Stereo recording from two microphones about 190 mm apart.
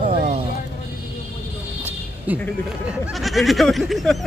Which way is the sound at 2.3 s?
10° right (ahead or behind).